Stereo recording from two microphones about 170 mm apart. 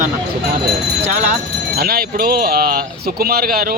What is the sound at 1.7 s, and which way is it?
Speech, 65° right (ahead or behind).